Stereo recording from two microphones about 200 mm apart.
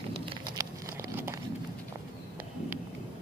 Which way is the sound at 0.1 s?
25° right (ahead or behind).